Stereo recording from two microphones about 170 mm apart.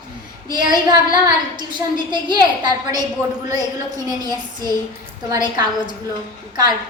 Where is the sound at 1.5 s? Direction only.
25° right (ahead or behind).